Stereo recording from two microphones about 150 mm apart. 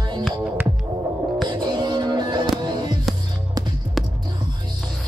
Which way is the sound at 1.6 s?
30° right (ahead or behind).